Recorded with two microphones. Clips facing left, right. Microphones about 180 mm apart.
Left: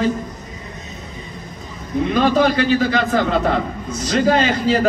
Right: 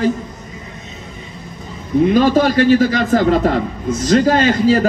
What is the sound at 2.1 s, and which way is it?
A man's voice, 45° right (ahead or behind).